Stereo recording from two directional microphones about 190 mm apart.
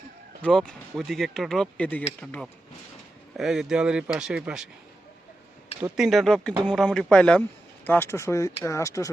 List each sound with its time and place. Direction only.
0.4 s speech: 5° left (ahead or behind)
6.0 s speech: centre (ahead or behind); by 9.0 s 15° left (ahead or behind)